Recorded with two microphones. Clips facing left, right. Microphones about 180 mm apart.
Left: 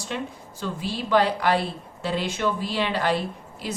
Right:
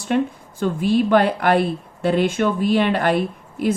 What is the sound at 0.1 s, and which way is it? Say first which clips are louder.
A woman's voice: right 12 dB; 55° right (ahead or behind).